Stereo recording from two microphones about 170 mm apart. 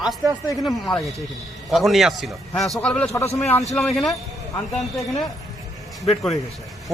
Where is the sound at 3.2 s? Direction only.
35° left (ahead or behind).